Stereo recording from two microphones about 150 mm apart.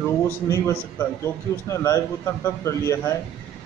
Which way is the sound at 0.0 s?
15° left (ahead or behind).